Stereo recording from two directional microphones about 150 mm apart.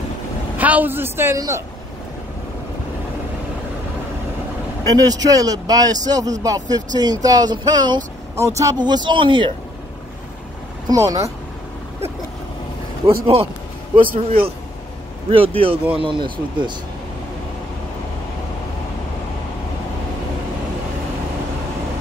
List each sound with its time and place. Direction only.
0.6 s a man's voice: 10° right (ahead or behind)
4.8 s speech: 25° right (ahead or behind)
8.4 s speech: 20° right (ahead or behind)
10.9 s speech: 20° right (ahead or behind)
13.0 s speech: 40° right (ahead or behind)
14.0 s a man's voice: 70° right (ahead or behind)
15.2 s speech: 40° right (ahead or behind)